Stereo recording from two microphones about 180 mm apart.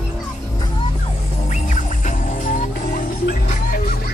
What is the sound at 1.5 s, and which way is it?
Music, 40° left (ahead or behind).